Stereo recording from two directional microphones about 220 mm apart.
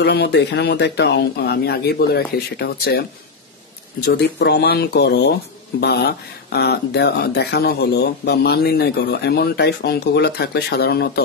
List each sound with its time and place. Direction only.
0.0 s speech: 50° left (ahead or behind)